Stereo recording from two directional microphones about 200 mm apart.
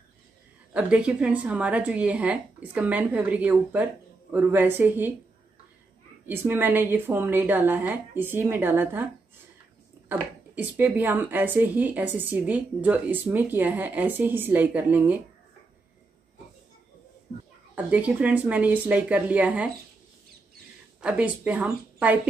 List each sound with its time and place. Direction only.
0.7 s speech: 5° right (ahead or behind)
6.2 s speech: 10° right (ahead or behind)
10.0 s speech: 10° right (ahead or behind)
17.7 s speech: 5° right (ahead or behind)
21.0 s speech: 5° right (ahead or behind)